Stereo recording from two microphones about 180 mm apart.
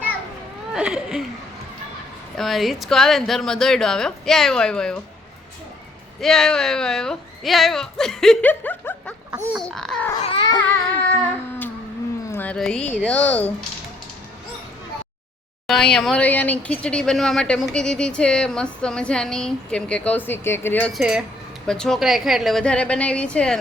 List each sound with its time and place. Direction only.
0.7 s speech: 5° right (ahead or behind)
2.3 s speech: centre (ahead or behind)
6.1 s speech: centre (ahead or behind)
9.3 s a sound: 15° right (ahead or behind)
9.6 s speech: 5° left (ahead or behind)
10.2 s baby cry: 30° left (ahead or behind)
11.1 s a sound: 10° left (ahead or behind)
12.3 s speech: 10° left (ahead or behind)
15.6 s speech: 5° left (ahead or behind)